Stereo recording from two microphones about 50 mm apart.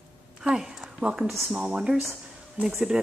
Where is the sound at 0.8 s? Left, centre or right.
Right.